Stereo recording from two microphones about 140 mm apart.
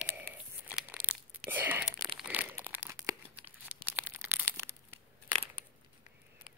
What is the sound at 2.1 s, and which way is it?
Crumpling, 10° right (ahead or behind).